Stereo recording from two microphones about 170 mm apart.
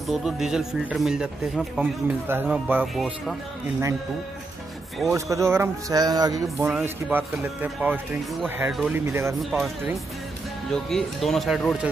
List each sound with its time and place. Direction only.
0.0 s a man's voice: centre (ahead or behind)
5.1 s speech: 15° right (ahead or behind)
6.7 s a man's voice: 10° right (ahead or behind)
9.0 s speech: 15° right (ahead or behind)
9.4 s a man's voice: centre (ahead or behind)